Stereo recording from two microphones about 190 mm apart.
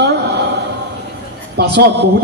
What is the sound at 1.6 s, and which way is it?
Speech, 60° right (ahead or behind).